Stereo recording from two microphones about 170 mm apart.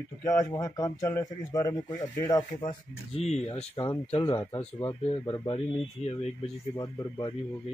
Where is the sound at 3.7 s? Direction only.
25° left (ahead or behind).